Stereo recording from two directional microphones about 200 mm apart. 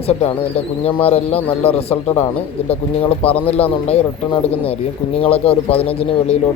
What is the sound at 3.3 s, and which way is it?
Speech, 30° left (ahead or behind).